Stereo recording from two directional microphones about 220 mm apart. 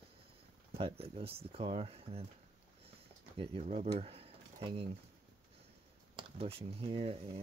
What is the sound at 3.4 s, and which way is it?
Speech, 25° right (ahead or behind).